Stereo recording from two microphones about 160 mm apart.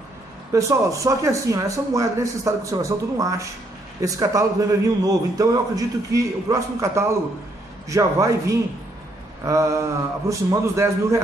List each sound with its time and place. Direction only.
0.5 s a man's voice: 20° right (ahead or behind)